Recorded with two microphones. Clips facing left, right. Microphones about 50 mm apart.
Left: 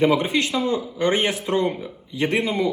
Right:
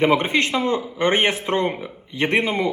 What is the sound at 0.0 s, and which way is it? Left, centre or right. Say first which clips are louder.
A man's voice: right 1 dB; right.